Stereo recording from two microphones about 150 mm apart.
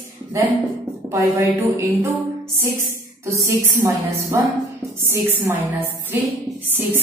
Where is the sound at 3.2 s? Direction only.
20° right (ahead or behind).